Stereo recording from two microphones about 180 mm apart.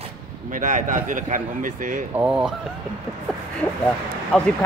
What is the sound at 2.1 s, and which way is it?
Speech, 5° right (ahead or behind).